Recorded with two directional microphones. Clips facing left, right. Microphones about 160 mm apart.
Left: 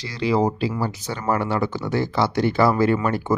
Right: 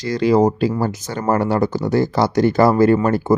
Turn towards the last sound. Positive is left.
turn(degrees=-40)  # may be behind; listen again after turning